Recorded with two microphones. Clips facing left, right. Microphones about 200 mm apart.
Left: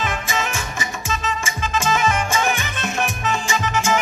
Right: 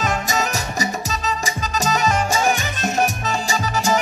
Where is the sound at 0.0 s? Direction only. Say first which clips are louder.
Right 3 dB; 40° right (ahead or behind).